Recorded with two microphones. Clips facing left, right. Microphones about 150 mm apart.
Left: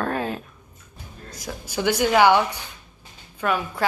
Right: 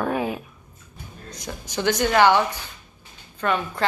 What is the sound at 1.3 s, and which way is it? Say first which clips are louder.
A woman's voice: left 1 dB; 5° left (ahead or behind).